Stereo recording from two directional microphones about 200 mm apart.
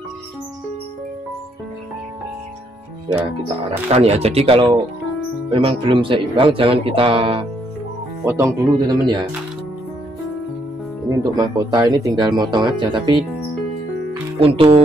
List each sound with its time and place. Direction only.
3.9 s speech: 30° right (ahead or behind)
8.3 s speech: 15° right (ahead or behind)
11.1 s speech: 15° right (ahead or behind)
14.4 s speech: 30° right (ahead or behind)